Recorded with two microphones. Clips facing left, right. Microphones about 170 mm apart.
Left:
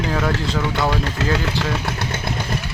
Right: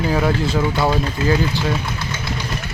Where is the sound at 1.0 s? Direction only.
75° left (ahead or behind).